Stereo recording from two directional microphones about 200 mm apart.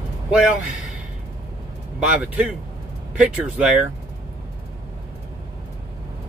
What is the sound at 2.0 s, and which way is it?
Speech, 5° right (ahead or behind).